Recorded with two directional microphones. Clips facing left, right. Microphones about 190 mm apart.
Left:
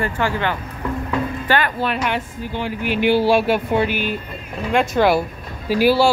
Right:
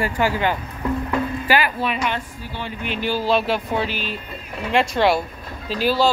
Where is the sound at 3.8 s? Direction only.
55° left (ahead or behind).